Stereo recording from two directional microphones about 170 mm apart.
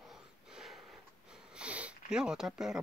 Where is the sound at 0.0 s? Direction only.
5° right (ahead or behind).